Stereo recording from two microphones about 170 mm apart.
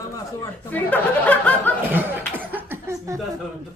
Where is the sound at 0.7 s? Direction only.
10° left (ahead or behind).